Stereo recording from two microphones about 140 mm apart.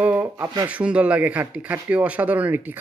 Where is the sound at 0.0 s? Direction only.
10° right (ahead or behind).